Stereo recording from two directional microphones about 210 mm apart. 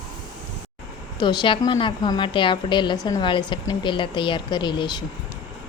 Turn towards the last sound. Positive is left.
turn(degrees=20)  # may be behind; listen again after turning